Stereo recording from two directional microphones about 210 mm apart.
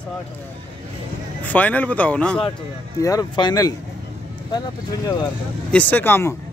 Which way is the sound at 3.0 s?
15° left (ahead or behind).